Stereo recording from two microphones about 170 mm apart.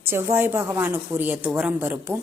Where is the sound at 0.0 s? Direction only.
15° right (ahead or behind).